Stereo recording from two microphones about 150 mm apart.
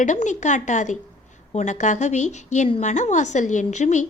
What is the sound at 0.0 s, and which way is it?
A woman's voice, 55° left (ahead or behind).